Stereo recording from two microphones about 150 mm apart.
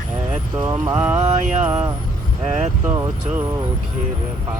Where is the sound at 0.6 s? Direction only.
20° right (ahead or behind).